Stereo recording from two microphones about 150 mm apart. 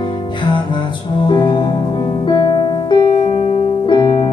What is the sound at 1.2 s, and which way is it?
Music, 30° left (ahead or behind).